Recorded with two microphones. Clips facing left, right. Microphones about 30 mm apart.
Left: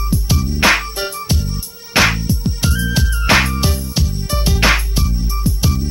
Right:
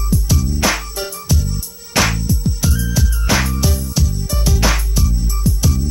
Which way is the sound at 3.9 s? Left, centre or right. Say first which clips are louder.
Left 1 dB; left.